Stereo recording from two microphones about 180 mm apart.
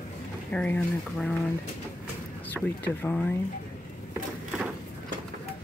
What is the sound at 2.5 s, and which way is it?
Speech, 10° left (ahead or behind).